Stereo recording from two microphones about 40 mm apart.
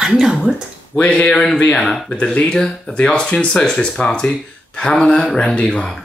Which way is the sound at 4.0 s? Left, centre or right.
Left.